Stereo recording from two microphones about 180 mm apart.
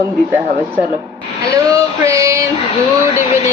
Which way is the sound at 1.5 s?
15° right (ahead or behind).